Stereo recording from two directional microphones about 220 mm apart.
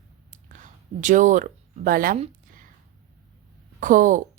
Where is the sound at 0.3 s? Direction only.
35° right (ahead or behind).